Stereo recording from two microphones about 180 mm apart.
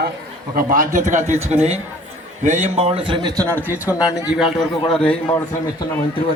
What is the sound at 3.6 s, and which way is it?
Speech, 10° right (ahead or behind).